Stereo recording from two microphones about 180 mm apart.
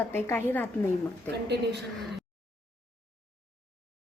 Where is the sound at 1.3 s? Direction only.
70° right (ahead or behind).